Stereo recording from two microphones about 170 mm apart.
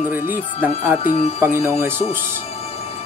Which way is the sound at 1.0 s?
45° left (ahead or behind).